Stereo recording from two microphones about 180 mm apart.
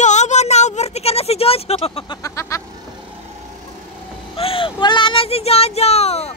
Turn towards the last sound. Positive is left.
turn(degrees=35)  # may be behind; listen again after turning